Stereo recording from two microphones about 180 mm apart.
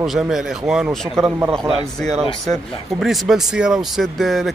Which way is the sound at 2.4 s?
Centre (ahead or behind).